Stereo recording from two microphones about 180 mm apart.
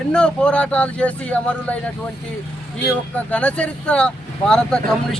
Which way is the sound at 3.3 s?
5° left (ahead or behind).